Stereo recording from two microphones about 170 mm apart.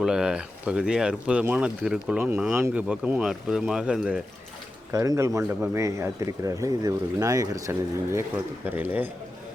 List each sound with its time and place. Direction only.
0.0 s speech: 5° right (ahead or behind)
4.9 s speech: 20° right (ahead or behind)